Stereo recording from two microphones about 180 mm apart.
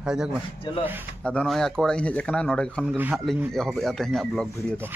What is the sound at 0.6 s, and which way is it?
Speech, 30° left (ahead or behind).